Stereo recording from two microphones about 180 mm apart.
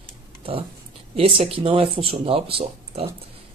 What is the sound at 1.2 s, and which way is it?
Speech, 30° right (ahead or behind).